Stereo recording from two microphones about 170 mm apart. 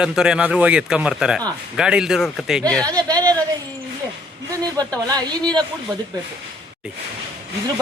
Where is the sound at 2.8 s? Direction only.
20° right (ahead or behind).